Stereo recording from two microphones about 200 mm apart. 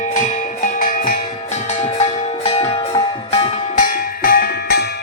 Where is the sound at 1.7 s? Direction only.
35° left (ahead or behind).